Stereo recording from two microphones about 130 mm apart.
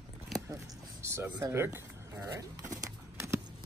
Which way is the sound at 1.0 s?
20° right (ahead or behind).